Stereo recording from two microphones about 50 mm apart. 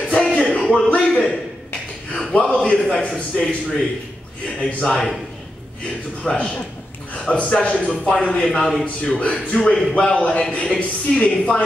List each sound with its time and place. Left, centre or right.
0.0 s music: centre
0.7 s a woman's voice: left
3.1 s a man's voice: centre
4.6 s a woman's voice: left
4.8 s a man's voice: centre
6.2 s a woman's voice: left
8.5 s a man's voice: centre
9.3 s a woman's voice: left